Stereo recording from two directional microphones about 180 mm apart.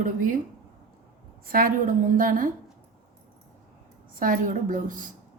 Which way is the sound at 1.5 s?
50° right (ahead or behind).